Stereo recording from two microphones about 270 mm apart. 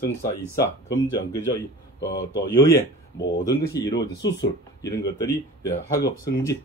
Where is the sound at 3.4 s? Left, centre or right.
Centre.